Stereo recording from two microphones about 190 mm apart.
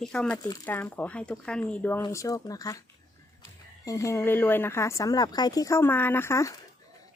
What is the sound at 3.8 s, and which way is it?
A woman's voice, 15° left (ahead or behind).